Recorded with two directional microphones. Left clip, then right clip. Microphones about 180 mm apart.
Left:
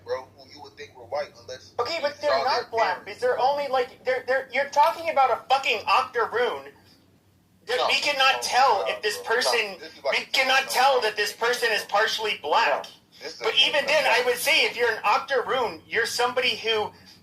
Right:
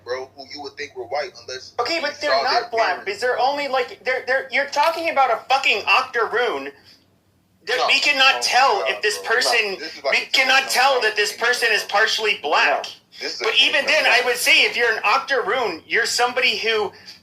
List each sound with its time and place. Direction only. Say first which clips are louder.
0.1 s speech: right 4 dB; 25° right (ahead or behind)
7.7 s speech: right 6 dB; 25° right (ahead or behind)